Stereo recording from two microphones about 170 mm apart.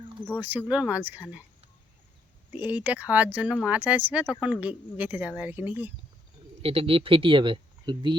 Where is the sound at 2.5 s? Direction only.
10° right (ahead or behind).